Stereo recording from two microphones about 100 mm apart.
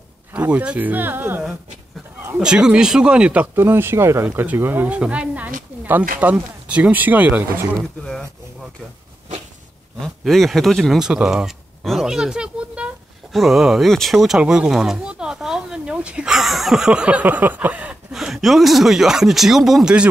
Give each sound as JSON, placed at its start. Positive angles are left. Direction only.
{"t": 0.3, "sound": "speech", "side_deg": -15}
{"t": 2.3, "sound": "speech", "side_deg": -10}
{"t": 3.5, "sound": "speech", "side_deg": -25}
{"t": 8.0, "sound": "speech", "side_deg": 5}
{"t": 9.9, "sound": "speech", "side_deg": 5}
{"t": 18.1, "sound": "speech", "side_deg": -5}